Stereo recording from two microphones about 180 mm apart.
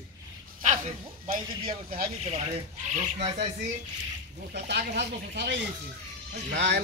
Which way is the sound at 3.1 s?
35° right (ahead or behind).